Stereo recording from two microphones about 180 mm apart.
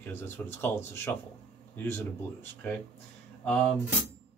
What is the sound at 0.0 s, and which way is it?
Speech, 10° left (ahead or behind).